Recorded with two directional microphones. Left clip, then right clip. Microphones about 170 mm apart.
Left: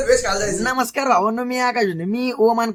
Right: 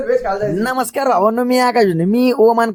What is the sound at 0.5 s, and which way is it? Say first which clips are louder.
Speech: right 3 dB; 50° right (ahead or behind).